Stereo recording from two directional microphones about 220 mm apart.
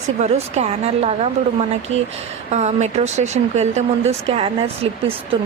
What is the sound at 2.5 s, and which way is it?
Speech, 30° right (ahead or behind).